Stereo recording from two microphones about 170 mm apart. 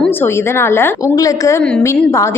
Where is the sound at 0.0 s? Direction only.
15° left (ahead or behind).